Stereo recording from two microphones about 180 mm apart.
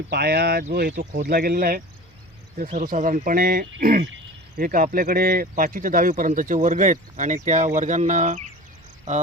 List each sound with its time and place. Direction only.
0.1 s speech: 65° right (ahead or behind); by 8.4 s 40° right (ahead or behind)